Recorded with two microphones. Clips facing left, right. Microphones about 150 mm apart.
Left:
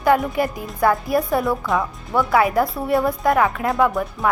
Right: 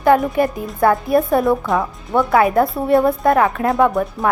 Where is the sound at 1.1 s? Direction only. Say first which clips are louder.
Right 5 dB; 25° right (ahead or behind).